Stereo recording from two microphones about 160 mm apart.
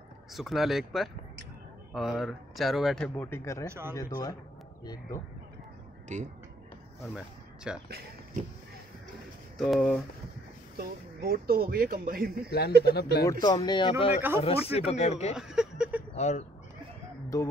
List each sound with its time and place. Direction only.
0.3 s speech: centre (ahead or behind); by 3.6 s 15° left (ahead or behind)
3.6 s speech: 15° right (ahead or behind)
3.9 s speech: 20° left (ahead or behind)
6.1 s speech: 50° right (ahead or behind)
7.2 s speech: 5° right (ahead or behind)
9.6 s speech: centre (ahead or behind)
10.8 s speech: 70° right (ahead or behind)
12.4 s speech: 85° left
13.3 s speech: 25° left (ahead or behind); by 15.3 s 45° left (ahead or behind)
15.3 s a sound: 5° right (ahead or behind)
16.2 s speech: 45° left (ahead or behind)